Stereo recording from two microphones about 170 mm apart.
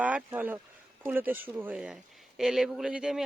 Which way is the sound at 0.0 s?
10° right (ahead or behind).